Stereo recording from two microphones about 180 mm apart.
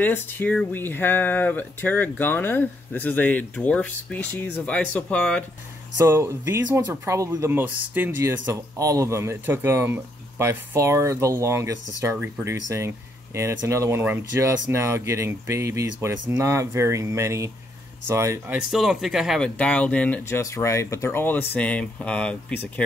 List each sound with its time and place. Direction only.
0.0 s speech: 10° left (ahead or behind)
5.9 s speech: 15° right (ahead or behind)
18.6 s speech: 5° right (ahead or behind)